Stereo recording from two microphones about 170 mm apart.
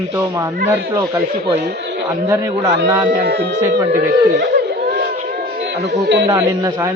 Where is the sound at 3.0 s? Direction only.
70° right (ahead or behind).